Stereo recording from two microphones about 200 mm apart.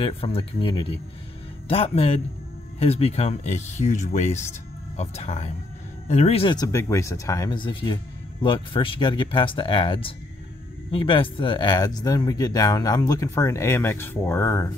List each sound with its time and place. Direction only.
0.0 s speech: 25° left (ahead or behind)